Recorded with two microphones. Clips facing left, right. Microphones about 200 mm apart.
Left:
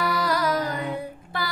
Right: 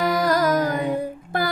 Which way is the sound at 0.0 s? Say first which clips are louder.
Right 5 dB; 45° right (ahead or behind).